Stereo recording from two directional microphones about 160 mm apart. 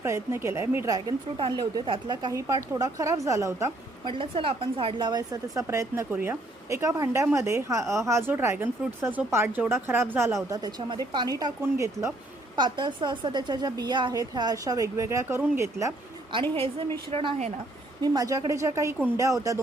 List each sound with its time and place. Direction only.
0.0 s speech: 15° right (ahead or behind)
4.1 s speech: 35° right (ahead or behind); by 10.3 s 15° right (ahead or behind)
10.5 s speech: 25° right (ahead or behind)
12.5 s speech: 30° right (ahead or behind)
16.3 s a woman's voice: 35° right (ahead or behind)
18.0 s speech: 25° right (ahead or behind)